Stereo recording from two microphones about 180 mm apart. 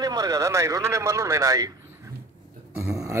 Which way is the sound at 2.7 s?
15° right (ahead or behind).